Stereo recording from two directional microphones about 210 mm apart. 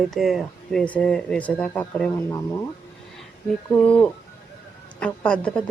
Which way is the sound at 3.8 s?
5° left (ahead or behind).